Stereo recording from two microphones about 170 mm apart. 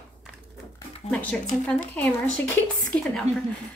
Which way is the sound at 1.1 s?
5° left (ahead or behind).